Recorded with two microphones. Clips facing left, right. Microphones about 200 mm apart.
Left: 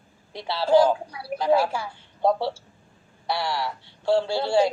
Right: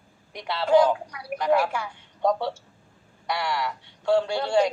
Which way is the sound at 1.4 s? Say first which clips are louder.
Left 1 dB; 30° left (ahead or behind).